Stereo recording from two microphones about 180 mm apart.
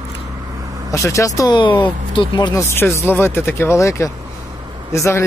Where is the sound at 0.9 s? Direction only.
15° left (ahead or behind).